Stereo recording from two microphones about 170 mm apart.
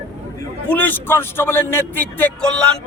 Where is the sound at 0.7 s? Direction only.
10° left (ahead or behind).